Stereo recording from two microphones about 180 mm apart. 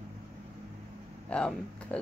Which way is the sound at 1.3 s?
5° left (ahead or behind).